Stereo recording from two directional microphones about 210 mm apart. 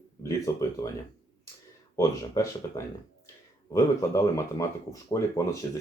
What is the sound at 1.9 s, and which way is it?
Speech, 15° left (ahead or behind).